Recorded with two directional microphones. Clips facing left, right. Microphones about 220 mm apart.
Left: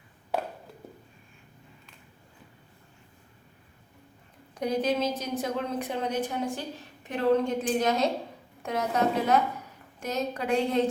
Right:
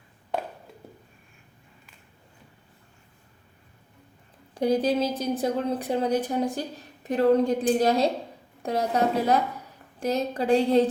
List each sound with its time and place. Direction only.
4.5 s a woman's voice: 30° right (ahead or behind)